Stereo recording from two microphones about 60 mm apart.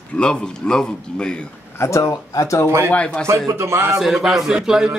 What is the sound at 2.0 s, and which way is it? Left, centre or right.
Speech, left.